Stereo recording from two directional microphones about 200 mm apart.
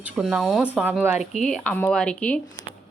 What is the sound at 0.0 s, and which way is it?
Speech, centre (ahead or behind).